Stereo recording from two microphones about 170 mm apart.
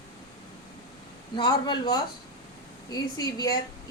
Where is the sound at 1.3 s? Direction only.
25° left (ahead or behind).